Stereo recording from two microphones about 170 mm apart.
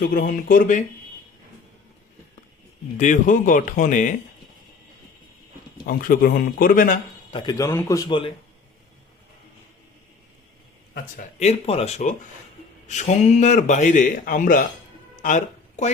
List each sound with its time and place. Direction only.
0.0 s speech: 55° left (ahead or behind)
3.0 s a man's voice: 50° left (ahead or behind)
5.8 s speech: 55° left (ahead or behind)
7.3 s a man's voice: 25° left (ahead or behind)
8.0 s a man's voice: 30° left (ahead or behind)
11.3 s a man's voice: 35° left (ahead or behind); by 14.6 s 55° left (ahead or behind)
15.1 s a sound: 50° left (ahead or behind)